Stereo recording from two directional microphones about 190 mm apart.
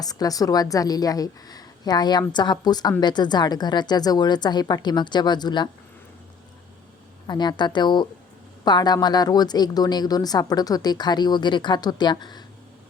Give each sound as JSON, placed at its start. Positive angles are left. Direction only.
{"t": 0.0, "sound": "speech", "side_deg": 20}
{"t": 7.3, "sound": "speech", "side_deg": 25}